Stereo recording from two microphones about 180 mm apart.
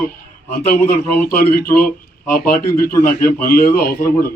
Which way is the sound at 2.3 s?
55° left (ahead or behind).